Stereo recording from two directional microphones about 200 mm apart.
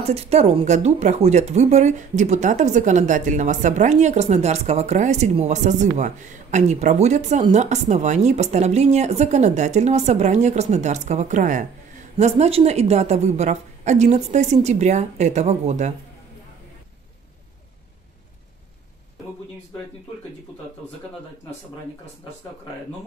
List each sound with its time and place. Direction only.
0.0 s speech: 30° right (ahead or behind)